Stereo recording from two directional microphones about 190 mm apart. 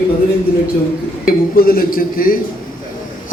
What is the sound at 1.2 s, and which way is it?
A man's voice, 50° left (ahead or behind).